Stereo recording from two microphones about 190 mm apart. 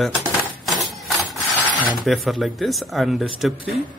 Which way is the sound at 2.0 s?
Centre (ahead or behind).